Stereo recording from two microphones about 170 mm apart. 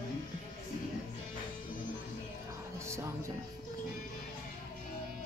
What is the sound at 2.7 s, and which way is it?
Music, 15° right (ahead or behind).